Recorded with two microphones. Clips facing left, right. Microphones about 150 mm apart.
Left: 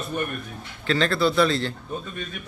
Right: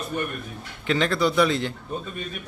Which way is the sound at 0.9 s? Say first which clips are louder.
Even; 15° right (ahead or behind).